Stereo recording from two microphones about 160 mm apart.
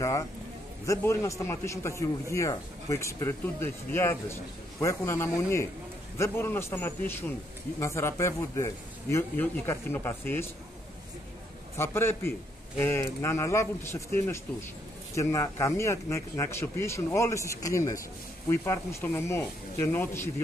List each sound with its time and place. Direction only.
0.8 s a man's voice: 20° left (ahead or behind)
11.7 s a man's voice: 15° left (ahead or behind)